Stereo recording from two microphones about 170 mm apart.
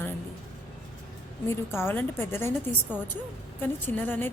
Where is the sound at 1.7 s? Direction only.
10° left (ahead or behind).